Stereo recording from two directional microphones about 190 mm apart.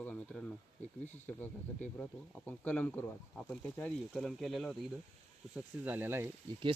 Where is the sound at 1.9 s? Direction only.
5° left (ahead or behind); by 6.3 s 10° right (ahead or behind).